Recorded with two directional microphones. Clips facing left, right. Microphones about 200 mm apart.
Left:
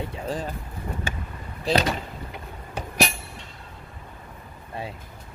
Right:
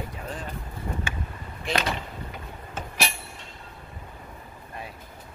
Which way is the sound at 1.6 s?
35° left (ahead or behind).